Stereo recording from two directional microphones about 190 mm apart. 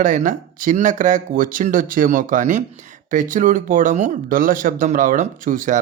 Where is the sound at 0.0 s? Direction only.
40° right (ahead or behind).